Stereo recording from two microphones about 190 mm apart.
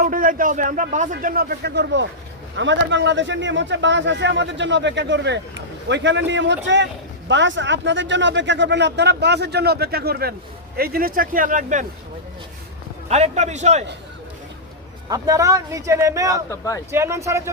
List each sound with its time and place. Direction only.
0.0 s speech: 45° right (ahead or behind)
13.1 s a man's voice: 35° right (ahead or behind)
15.1 s speech: 15° right (ahead or behind)
16.5 s speech: 15° left (ahead or behind)
16.9 s speech: 15° right (ahead or behind)